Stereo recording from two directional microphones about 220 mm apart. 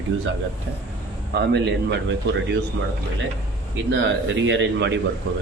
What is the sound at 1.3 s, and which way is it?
Speech, 50° right (ahead or behind).